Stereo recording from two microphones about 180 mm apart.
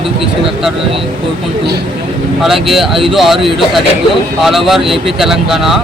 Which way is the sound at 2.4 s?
Centre (ahead or behind).